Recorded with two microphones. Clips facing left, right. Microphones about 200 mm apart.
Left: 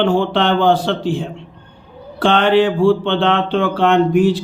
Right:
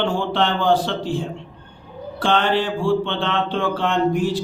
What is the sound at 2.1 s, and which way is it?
Speech, 60° left (ahead or behind).